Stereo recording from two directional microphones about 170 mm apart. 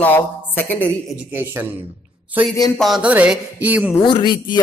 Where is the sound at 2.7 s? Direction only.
Centre (ahead or behind).